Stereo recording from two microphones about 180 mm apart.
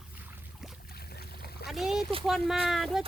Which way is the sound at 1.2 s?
60° left (ahead or behind).